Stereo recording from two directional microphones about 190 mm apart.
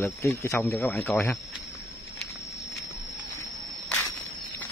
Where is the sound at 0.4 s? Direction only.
15° left (ahead or behind).